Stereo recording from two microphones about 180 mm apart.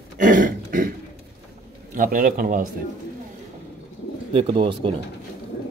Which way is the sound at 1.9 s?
50° right (ahead or behind).